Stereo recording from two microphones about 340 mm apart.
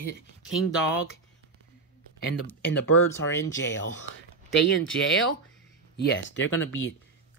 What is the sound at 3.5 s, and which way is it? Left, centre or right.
Speech, left.